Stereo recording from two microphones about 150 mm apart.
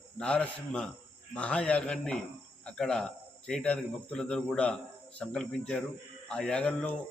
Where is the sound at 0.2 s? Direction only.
5° left (ahead or behind).